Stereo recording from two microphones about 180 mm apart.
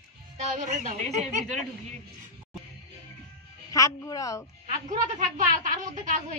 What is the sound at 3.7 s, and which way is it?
Speech, 20° left (ahead or behind).